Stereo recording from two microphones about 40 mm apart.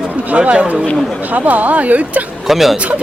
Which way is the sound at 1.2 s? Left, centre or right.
Right.